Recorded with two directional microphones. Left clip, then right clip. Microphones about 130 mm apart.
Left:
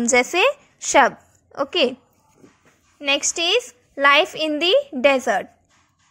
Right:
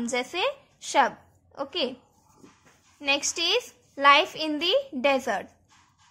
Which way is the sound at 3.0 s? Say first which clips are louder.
Left 5 dB; 40° left (ahead or behind).